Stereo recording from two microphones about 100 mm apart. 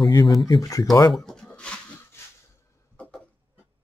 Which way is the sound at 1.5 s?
10° left (ahead or behind).